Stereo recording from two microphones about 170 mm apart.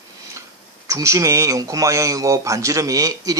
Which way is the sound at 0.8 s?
20° right (ahead or behind).